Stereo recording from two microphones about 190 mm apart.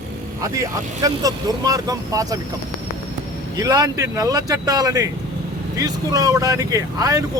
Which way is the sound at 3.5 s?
20° right (ahead or behind).